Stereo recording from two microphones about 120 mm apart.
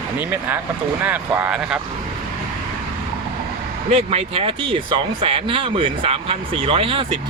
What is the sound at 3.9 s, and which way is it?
Speech, 55° right (ahead or behind).